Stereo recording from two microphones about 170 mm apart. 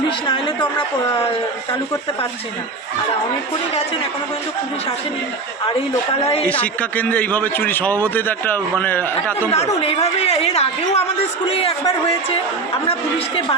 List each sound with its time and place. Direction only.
5.6 s a woman's voice: 20° left (ahead or behind)
6.4 s a man's voice: 10° left (ahead or behind)
9.5 s a woman's voice: 35° left (ahead or behind)